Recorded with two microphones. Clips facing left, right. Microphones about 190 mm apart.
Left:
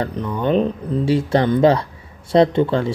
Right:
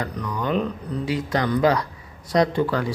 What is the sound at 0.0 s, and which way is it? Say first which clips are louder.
Speech: left 6 dB; 25° left (ahead or behind).